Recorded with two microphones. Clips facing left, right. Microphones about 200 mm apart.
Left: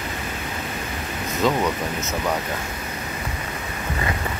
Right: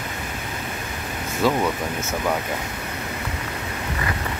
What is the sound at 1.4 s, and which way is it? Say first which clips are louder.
Speech: even; 10° right (ahead or behind).